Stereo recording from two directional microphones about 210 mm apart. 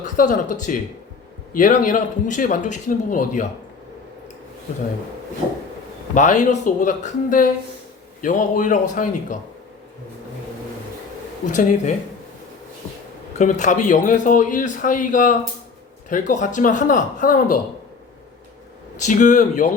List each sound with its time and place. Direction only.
0.0 s a man's voice: 35° left (ahead or behind)
6.1 s a man's voice: 35° left (ahead or behind)
11.4 s a man's voice: 35° left (ahead or behind)
13.4 s a man's voice: 35° left (ahead or behind)
18.9 s a man's voice: 35° left (ahead or behind)